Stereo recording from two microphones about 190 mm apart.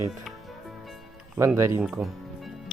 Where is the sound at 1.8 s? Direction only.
Centre (ahead or behind).